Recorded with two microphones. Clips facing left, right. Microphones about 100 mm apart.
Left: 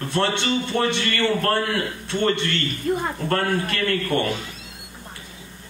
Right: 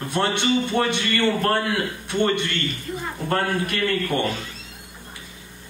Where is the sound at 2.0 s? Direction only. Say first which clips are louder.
Right 1 dB; 15° right (ahead or behind).